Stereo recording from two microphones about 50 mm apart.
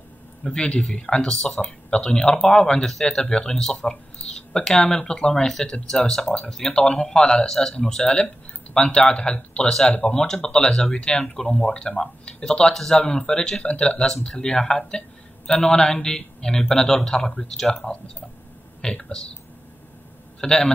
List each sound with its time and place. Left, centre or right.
0.4 s speech: centre
18.8 s speech: centre
20.3 s a man's voice: centre